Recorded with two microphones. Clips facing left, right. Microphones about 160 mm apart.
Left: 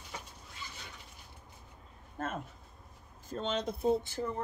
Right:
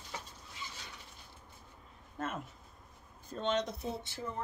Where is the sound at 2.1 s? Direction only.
50° left (ahead or behind).